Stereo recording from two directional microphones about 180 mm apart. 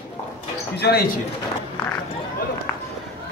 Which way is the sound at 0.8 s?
65° left (ahead or behind).